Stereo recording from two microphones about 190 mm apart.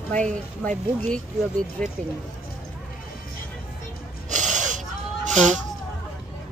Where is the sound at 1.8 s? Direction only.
5° left (ahead or behind).